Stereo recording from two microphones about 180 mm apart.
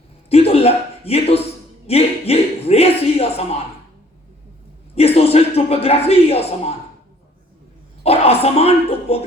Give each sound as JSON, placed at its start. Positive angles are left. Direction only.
{"t": 0.3, "sound": "a man's voice", "side_deg": 35}
{"t": 4.9, "sound": "a man's voice", "side_deg": 35}
{"t": 8.0, "sound": "a man's voice", "side_deg": 35}